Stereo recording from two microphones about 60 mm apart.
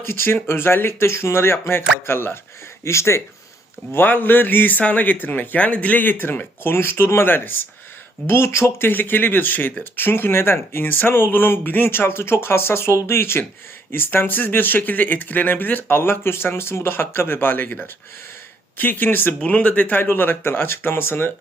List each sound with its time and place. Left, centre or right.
0.0 s speech: left
2.8 s speech: left
3.9 s speech: left
19.5 s speech: left
20.0 s speech: left